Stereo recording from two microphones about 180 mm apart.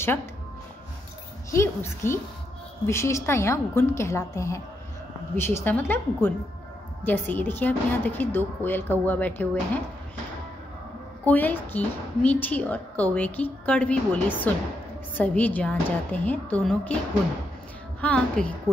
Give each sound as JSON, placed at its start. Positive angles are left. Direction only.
{"t": 1.5, "sound": "a woman's voice", "side_deg": 15}
{"t": 11.2, "sound": "a woman's voice", "side_deg": 10}
{"t": 18.0, "sound": "a woman's voice", "side_deg": 5}